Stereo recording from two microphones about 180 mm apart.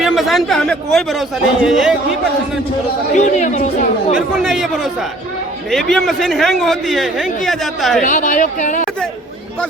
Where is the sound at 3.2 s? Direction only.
40° left (ahead or behind).